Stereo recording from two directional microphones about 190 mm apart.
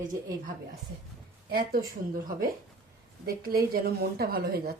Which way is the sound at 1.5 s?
55° right (ahead or behind).